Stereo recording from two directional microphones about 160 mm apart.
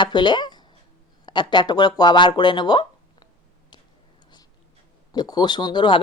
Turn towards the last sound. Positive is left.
turn(degrees=30)  # may be behind; listen again after turning